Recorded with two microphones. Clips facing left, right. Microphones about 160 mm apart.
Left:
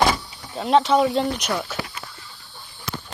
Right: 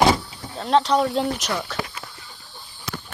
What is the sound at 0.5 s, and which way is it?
Speech, 5° left (ahead or behind).